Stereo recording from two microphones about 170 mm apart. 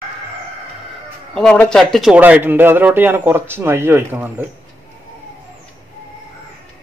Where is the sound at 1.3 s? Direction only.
5° left (ahead or behind); by 4.4 s 10° right (ahead or behind).